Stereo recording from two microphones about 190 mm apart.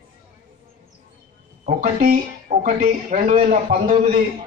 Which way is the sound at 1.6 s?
45° right (ahead or behind).